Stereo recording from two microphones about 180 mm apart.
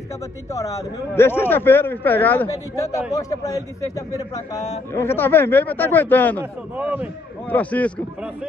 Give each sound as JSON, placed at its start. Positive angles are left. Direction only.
{"t": 0.5, "sound": "a man's voice", "side_deg": 15}
{"t": 6.8, "sound": "speech", "side_deg": -10}
{"t": 7.4, "sound": "a man's voice", "side_deg": 10}